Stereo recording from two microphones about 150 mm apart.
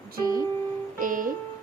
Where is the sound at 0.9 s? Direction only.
65° right (ahead or behind).